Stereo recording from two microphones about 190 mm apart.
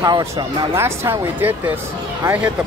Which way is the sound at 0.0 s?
15° right (ahead or behind).